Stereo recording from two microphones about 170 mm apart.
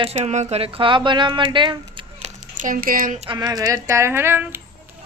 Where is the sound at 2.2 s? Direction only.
50° right (ahead or behind).